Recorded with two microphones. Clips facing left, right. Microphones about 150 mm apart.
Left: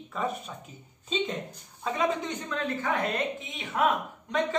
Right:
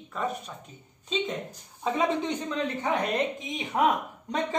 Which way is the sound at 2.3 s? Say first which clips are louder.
Right 2 dB; 15° right (ahead or behind).